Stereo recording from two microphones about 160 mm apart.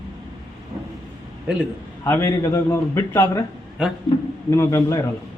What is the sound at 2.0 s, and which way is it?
A man's voice, 15° left (ahead or behind).